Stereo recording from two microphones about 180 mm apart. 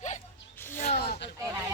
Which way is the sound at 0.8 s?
65° left (ahead or behind).